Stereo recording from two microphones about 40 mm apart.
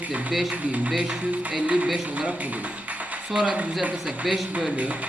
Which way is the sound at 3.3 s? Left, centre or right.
Right.